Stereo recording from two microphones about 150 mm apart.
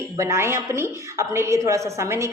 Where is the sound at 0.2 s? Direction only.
15° right (ahead or behind).